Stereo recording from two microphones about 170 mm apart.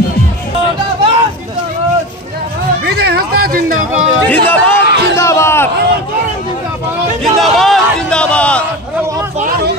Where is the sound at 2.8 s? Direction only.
70° right (ahead or behind).